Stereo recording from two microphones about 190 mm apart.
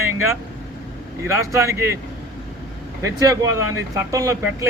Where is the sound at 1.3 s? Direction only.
15° right (ahead or behind).